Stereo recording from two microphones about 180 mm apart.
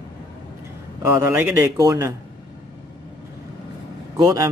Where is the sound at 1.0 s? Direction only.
15° right (ahead or behind).